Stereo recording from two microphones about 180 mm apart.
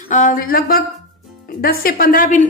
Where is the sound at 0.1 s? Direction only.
45° left (ahead or behind).